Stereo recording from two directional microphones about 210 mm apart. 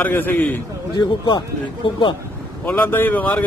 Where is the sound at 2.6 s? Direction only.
10° left (ahead or behind).